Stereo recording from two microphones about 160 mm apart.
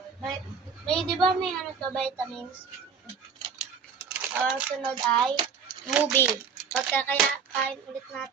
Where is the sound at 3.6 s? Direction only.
5° right (ahead or behind).